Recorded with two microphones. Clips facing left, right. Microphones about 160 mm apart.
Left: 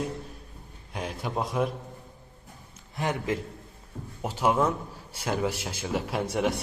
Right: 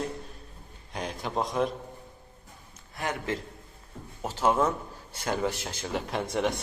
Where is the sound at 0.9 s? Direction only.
5° left (ahead or behind).